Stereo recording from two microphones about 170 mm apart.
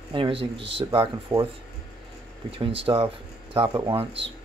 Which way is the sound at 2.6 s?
30° right (ahead or behind).